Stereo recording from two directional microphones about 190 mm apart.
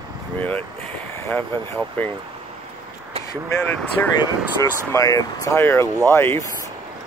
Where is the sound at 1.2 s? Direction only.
10° left (ahead or behind).